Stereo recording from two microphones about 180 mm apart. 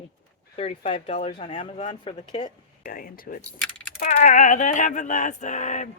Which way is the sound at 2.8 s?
50° left (ahead or behind).